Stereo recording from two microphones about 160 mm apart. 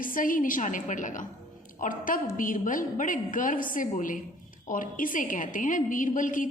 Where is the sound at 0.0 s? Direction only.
60° left (ahead or behind).